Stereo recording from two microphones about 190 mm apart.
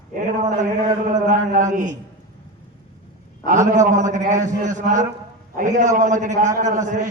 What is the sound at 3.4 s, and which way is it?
A man's voice, 45° right (ahead or behind).